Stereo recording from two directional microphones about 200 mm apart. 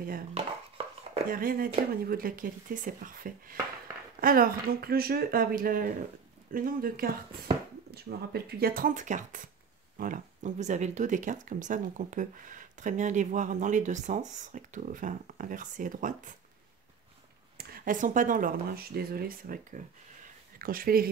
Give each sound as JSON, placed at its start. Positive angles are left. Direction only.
{"t": 0.0, "sound": "speech", "side_deg": -45}
{"t": 0.4, "sound": "chopping", "side_deg": -25}
{"t": 1.3, "sound": "speech", "side_deg": -45}
{"t": 17.6, "sound": "speech", "side_deg": -50}